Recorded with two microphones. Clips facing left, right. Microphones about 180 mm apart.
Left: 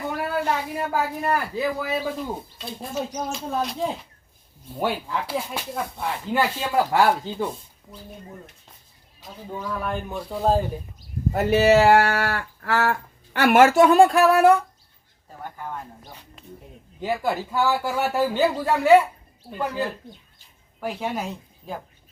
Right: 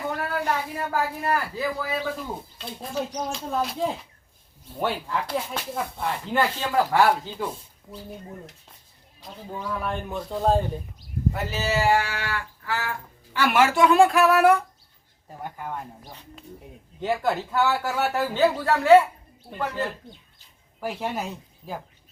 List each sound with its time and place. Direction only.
0.2 s speech: 15° left (ahead or behind)
2.0 s speech: 5° left (ahead or behind)
9.2 s speech: centre (ahead or behind)
11.3 s speech: 55° left (ahead or behind); by 14.5 s 30° left (ahead or behind)
17.0 s speech: 5° left (ahead or behind)
19.5 s speech: centre (ahead or behind)